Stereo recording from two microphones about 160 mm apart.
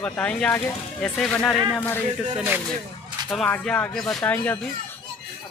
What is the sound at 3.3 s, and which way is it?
Speech, 5° left (ahead or behind).